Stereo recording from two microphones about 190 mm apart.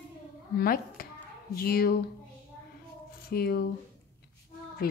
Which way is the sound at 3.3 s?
55° left (ahead or behind).